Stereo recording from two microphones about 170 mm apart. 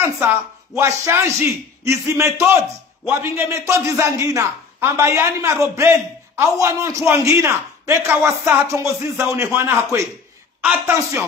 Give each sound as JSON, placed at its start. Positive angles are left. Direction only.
{"t": 0.0, "sound": "a man's voice", "side_deg": -10}
{"t": 11.0, "sound": "a man's voice", "side_deg": -15}